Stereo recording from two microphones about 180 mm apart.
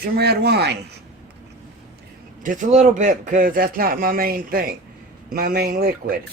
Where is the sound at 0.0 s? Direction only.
60° right (ahead or behind).